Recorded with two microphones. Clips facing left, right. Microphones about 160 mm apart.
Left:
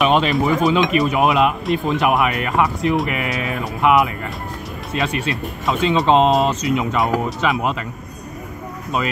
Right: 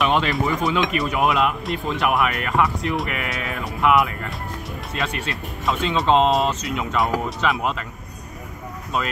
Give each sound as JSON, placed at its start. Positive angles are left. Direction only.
{"t": 0.0, "sound": "chink", "side_deg": 20}
{"t": 0.7, "sound": "speech", "side_deg": 20}
{"t": 7.0, "sound": "speech", "side_deg": 0}
{"t": 7.5, "sound": "speech", "side_deg": 15}